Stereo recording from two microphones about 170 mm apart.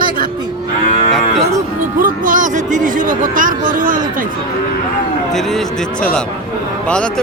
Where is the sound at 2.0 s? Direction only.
50° right (ahead or behind).